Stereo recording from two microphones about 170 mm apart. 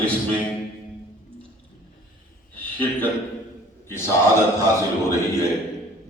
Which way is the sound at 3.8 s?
15° left (ahead or behind).